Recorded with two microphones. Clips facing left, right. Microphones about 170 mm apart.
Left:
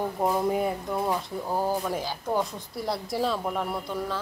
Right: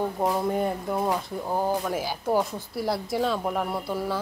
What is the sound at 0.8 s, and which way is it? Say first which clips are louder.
Speech: right 2 dB; 5° right (ahead or behind).